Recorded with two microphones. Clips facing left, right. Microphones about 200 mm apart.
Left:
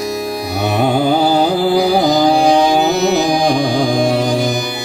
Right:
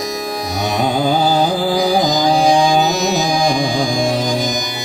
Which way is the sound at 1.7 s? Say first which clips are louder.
Left 3 dB; 60° left (ahead or behind).